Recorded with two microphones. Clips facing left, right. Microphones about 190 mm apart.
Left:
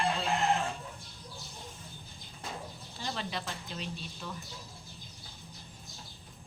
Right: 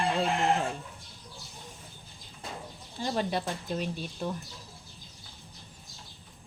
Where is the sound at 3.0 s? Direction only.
50° right (ahead or behind).